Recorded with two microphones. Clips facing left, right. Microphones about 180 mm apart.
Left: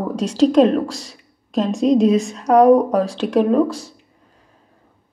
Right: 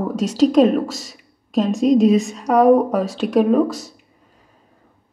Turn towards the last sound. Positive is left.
turn(degrees=-5)  # may be behind; listen again after turning